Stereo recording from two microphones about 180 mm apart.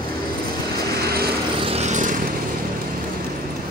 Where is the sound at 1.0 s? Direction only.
60° right (ahead or behind).